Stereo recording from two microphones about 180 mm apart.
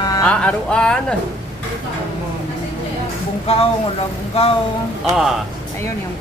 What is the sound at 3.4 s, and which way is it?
Speech, 35° left (ahead or behind).